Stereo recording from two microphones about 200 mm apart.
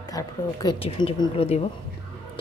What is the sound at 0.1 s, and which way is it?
Speech, 20° left (ahead or behind).